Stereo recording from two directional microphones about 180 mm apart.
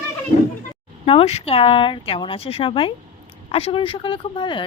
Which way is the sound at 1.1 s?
35° left (ahead or behind).